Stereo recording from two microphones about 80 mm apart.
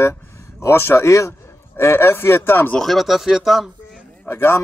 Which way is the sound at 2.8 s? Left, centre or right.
Centre.